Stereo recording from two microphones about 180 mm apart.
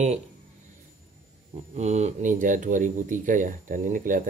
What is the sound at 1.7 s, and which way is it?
Speech, 40° right (ahead or behind).